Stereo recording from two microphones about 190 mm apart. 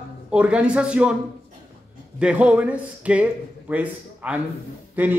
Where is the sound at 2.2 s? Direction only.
5° right (ahead or behind).